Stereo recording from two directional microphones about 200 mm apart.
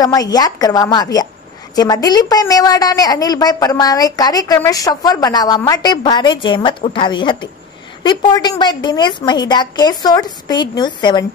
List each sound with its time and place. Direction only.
0.0 s a woman's voice: 20° left (ahead or behind)